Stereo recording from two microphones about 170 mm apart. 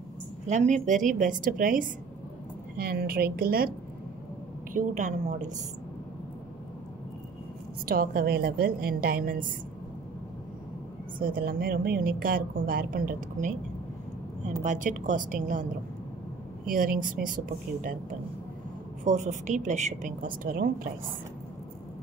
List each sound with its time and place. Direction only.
0.5 s a woman's voice: 45° right (ahead or behind)
2.8 s a woman's voice: 60° right (ahead or behind)
4.7 s a woman's voice: 45° right (ahead or behind)
7.8 s a woman's voice: 60° right (ahead or behind)
11.1 s a woman's voice: 55° right (ahead or behind)
14.6 s a woman's voice: 50° right (ahead or behind)
16.6 s a woman's voice: 55° right (ahead or behind)
19.0 s a woman's voice: 45° right (ahead or behind)